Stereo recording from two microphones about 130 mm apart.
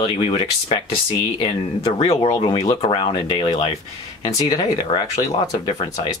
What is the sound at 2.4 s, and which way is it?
Speech, 30° left (ahead or behind).